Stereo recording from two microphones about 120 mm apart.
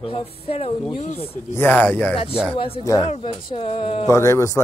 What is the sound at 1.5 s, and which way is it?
Speech, 15° left (ahead or behind).